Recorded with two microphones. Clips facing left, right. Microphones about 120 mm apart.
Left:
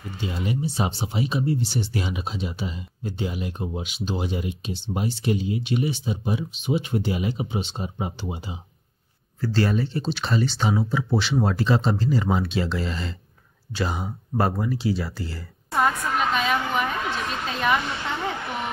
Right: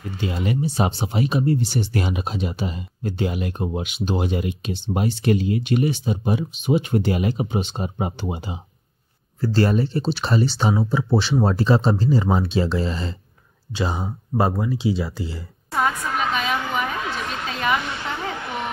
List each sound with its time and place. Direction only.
0.2 s speech: 60° right (ahead or behind)
9.4 s speech: 40° right (ahead or behind); by 15.4 s 20° right (ahead or behind)
15.7 s a sound: centre (ahead or behind)